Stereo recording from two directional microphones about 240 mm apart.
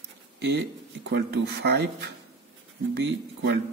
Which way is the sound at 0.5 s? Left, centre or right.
Right.